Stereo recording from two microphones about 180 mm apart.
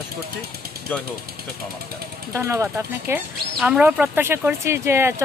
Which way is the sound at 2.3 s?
15° right (ahead or behind).